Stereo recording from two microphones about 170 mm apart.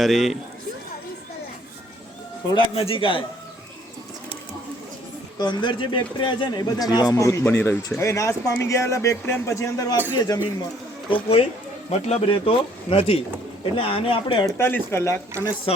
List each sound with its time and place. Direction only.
0.0 s speech: centre (ahead or behind)
2.5 s speech: 30° left (ahead or behind)
5.4 s speech: 25° left (ahead or behind)
11.1 s speech: 35° left (ahead or behind)
14.4 s speech: 15° left (ahead or behind)